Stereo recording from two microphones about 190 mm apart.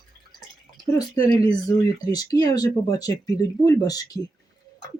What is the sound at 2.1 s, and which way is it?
Speech, 20° left (ahead or behind).